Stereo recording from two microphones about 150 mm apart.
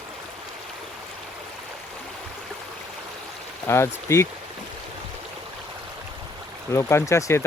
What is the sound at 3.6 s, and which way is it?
Speech, 15° left (ahead or behind).